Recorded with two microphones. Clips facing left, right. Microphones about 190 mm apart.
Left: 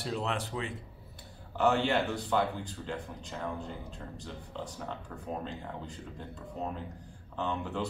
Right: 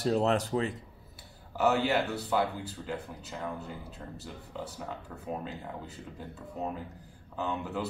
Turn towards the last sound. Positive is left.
turn(degrees=-5)  # may be behind; listen again after turning